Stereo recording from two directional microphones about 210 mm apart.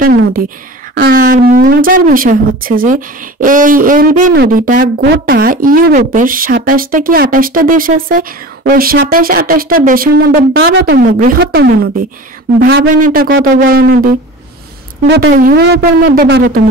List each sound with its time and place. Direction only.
0.9 s speech: 45° right (ahead or behind)
10.6 s speech: 55° right (ahead or behind)